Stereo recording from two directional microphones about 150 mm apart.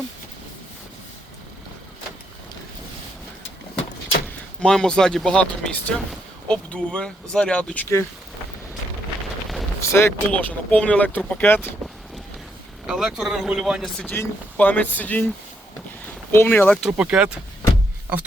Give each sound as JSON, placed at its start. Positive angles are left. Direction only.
{"t": 4.6, "sound": "speech", "side_deg": 5}
{"t": 9.8, "sound": "speech", "side_deg": 15}
{"t": 12.9, "sound": "speech", "side_deg": -5}
{"t": 14.0, "sound": "speech", "side_deg": 10}
{"t": 16.3, "sound": "speech", "side_deg": 15}
{"t": 16.8, "sound": "speech", "side_deg": -5}